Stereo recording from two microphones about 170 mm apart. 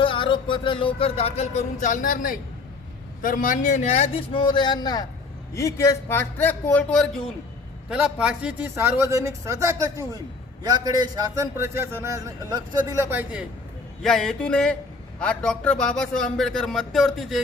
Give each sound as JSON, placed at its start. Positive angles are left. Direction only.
{"t": 0.0, "sound": "a man's voice", "side_deg": 30}
{"t": 14.0, "sound": "speech", "side_deg": 5}